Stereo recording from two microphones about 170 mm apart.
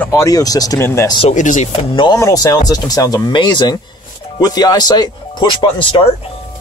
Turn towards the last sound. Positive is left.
turn(degrees=25)  # may be behind; listen again after turning